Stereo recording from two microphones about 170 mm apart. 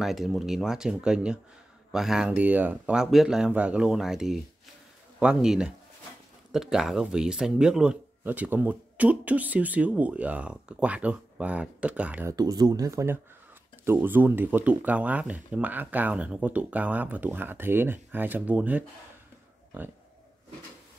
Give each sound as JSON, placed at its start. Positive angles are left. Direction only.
{"t": 0.0, "sound": "a man's voice", "side_deg": 0}
{"t": 12.4, "sound": "a man's voice", "side_deg": -25}